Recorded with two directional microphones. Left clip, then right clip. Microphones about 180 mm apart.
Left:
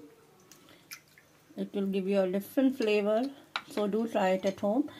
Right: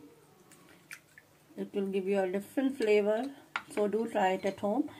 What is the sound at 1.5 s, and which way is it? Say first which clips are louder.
Speech: even; 35° left (ahead or behind).